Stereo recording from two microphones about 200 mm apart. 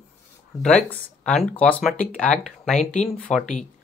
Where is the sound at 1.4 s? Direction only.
5° left (ahead or behind).